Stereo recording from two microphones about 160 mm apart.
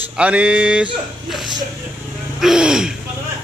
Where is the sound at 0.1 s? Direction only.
5° right (ahead or behind).